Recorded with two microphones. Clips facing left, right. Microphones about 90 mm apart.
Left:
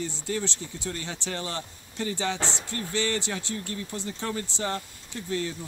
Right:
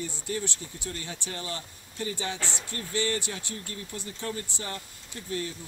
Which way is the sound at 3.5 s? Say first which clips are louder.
Left 5 dB; 55° left (ahead or behind).